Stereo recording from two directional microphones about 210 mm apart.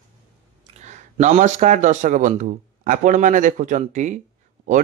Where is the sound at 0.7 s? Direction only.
35° right (ahead or behind).